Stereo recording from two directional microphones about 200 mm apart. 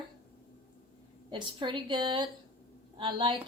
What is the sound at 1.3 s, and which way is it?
A woman's voice, 25° right (ahead or behind).